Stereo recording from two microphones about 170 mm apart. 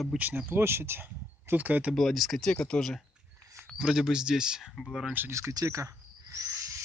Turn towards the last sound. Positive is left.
turn(degrees=-15)  # may be behind; listen again after turning